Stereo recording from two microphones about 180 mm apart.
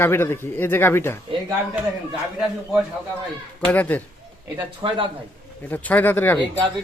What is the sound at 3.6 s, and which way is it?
Speech, 10° left (ahead or behind).